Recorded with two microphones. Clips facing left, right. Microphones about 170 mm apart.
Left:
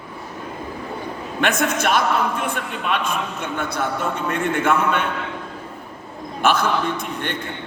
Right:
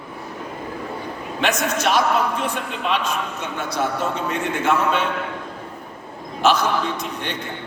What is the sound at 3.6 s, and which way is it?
A man's voice, 55° left (ahead or behind).